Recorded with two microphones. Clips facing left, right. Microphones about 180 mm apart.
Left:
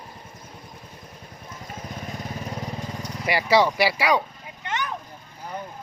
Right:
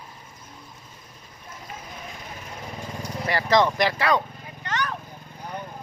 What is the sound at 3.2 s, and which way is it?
Speech, 10° left (ahead or behind).